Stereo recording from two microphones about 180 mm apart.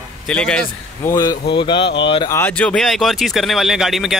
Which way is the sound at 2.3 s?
10° left (ahead or behind).